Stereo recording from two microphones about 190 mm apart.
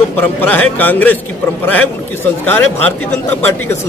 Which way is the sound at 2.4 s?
10° left (ahead or behind).